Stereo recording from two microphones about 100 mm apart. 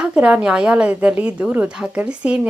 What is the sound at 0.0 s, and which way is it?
Speech, 10° right (ahead or behind).